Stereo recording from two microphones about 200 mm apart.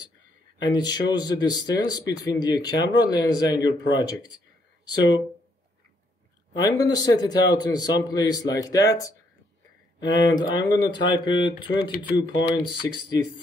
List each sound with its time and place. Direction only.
0.6 s speech: 20° left (ahead or behind)
6.5 s speech: 20° left (ahead or behind)